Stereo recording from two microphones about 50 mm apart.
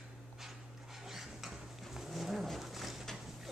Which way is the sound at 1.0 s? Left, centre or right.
Centre.